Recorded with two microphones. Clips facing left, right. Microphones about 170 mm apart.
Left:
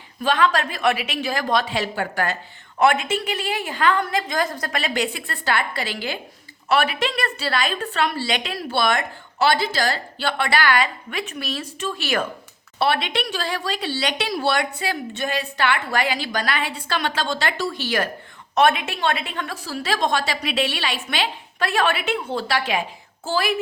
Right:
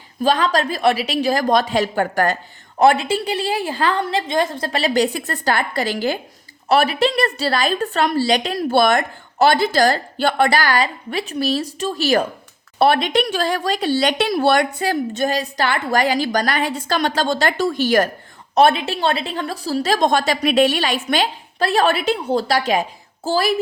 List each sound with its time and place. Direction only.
0.2 s a woman's voice: 35° right (ahead or behind)
18.5 s a woman's voice: 35° right (ahead or behind)